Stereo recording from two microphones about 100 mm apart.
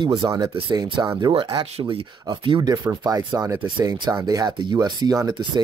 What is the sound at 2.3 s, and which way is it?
Speech, 50° right (ahead or behind).